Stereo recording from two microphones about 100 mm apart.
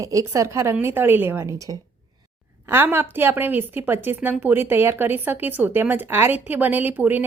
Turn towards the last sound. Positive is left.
turn(degrees=-20)  # may be behind; listen again after turning